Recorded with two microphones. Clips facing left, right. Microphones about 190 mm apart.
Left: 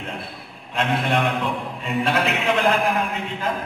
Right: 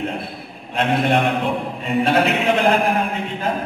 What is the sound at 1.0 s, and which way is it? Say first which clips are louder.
A man's voice: right 4 dB; 55° right (ahead or behind).